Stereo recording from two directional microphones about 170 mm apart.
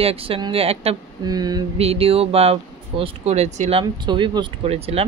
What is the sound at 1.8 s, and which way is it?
A woman's voice, 35° right (ahead or behind).